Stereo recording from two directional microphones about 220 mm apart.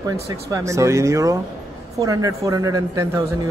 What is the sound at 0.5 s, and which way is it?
Speech, 15° right (ahead or behind).